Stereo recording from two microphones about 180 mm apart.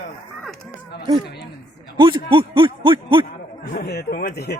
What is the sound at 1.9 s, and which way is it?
A man's voice, 25° right (ahead or behind).